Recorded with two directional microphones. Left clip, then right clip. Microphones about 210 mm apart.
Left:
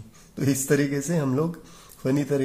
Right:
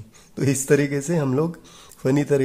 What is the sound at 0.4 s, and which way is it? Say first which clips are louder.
Speech: right 4 dB; 30° right (ahead or behind).